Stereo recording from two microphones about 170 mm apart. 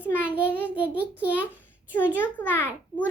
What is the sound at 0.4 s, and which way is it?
Child singing, 10° left (ahead or behind).